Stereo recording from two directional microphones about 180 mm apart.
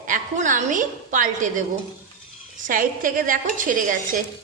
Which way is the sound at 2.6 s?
50° right (ahead or behind).